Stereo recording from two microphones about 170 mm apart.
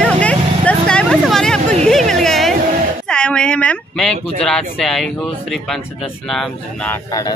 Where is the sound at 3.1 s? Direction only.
5° left (ahead or behind).